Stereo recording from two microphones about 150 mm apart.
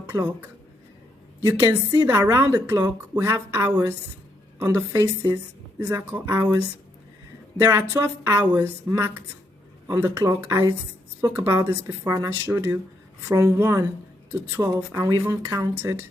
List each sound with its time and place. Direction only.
0.1 s speech: 15° right (ahead or behind)
2.0 s a woman's voice: 15° right (ahead or behind)
7.6 s a woman's voice: 15° right (ahead or behind)